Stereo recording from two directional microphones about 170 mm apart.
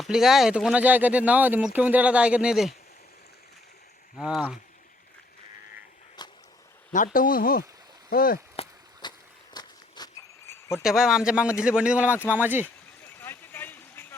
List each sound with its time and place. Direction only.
0.0 s speech: centre (ahead or behind)
4.2 s a man's voice: 5° right (ahead or behind)
6.2 s a sound: 25° left (ahead or behind)
6.9 s speech: 50° left (ahead or behind)
8.5 s walk: 25° left (ahead or behind)
10.8 s a man's voice: 5° right (ahead or behind)
13.1 s a sound: 10° left (ahead or behind)